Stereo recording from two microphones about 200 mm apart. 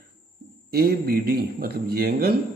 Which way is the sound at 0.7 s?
50° right (ahead or behind).